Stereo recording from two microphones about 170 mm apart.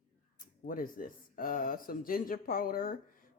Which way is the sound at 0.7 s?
55° left (ahead or behind).